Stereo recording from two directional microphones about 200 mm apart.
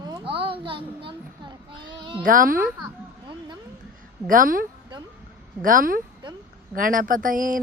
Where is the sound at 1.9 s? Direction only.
25° right (ahead or behind).